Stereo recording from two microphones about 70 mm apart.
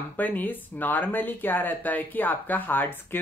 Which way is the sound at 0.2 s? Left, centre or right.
Left.